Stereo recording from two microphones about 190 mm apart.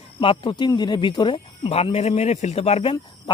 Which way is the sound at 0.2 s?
25° left (ahead or behind).